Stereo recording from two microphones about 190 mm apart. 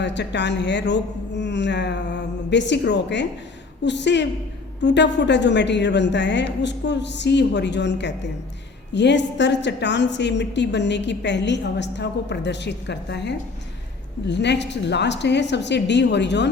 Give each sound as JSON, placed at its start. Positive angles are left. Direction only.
{"t": 0.0, "sound": "a woman's voice", "side_deg": 65}